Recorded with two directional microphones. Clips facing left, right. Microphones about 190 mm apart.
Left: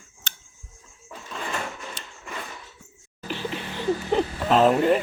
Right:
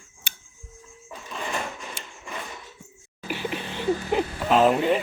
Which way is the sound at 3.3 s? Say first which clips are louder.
Right 1 dB; 15° right (ahead or behind).